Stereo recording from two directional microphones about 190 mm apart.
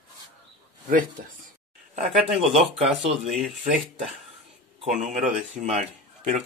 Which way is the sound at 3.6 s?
35° right (ahead or behind).